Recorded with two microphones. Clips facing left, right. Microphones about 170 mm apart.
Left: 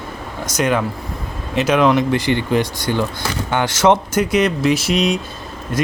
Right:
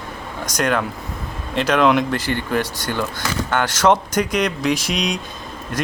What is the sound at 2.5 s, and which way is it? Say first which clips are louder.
Speech: left 4 dB; 15° left (ahead or behind).